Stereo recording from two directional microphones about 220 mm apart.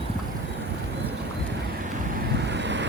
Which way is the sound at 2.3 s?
55° right (ahead or behind).